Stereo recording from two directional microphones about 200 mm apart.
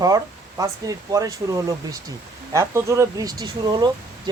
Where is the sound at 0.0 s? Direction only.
15° right (ahead or behind).